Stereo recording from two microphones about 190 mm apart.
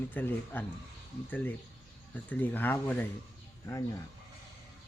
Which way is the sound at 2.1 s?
10° left (ahead or behind).